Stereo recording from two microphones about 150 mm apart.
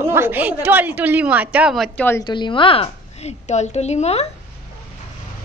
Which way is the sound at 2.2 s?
30° left (ahead or behind).